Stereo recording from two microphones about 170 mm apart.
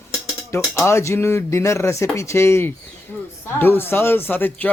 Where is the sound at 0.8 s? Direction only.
15° left (ahead or behind).